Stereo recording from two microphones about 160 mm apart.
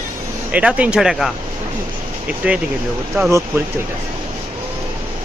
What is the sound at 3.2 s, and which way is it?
Speech, 15° right (ahead or behind).